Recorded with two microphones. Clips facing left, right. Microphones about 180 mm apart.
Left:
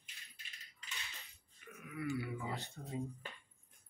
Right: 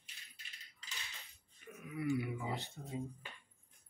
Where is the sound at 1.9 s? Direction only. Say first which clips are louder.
Right 3 dB; 20° right (ahead or behind).